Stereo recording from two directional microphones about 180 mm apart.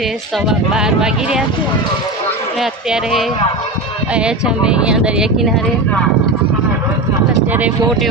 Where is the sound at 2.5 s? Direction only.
Centre (ahead or behind).